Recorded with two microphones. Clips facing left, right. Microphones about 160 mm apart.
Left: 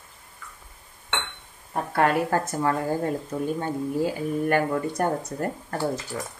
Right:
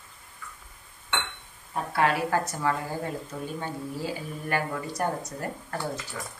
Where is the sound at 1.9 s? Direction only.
50° left (ahead or behind).